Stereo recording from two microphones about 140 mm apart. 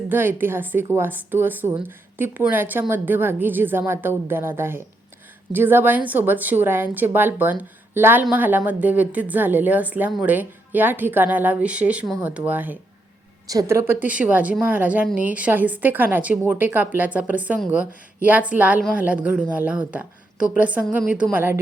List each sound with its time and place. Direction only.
0.1 s a woman's voice: 15° right (ahead or behind)
13.5 s a woman's voice: 25° right (ahead or behind)